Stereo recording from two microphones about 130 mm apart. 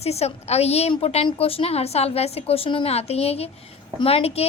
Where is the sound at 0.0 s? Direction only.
55° left (ahead or behind).